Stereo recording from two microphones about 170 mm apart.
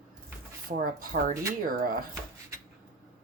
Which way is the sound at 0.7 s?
45° right (ahead or behind).